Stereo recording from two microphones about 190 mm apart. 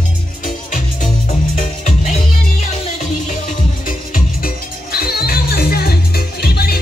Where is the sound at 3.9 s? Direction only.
45° left (ahead or behind).